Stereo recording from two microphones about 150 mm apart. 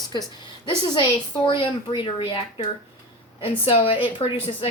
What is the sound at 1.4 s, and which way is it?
Speech, 35° left (ahead or behind).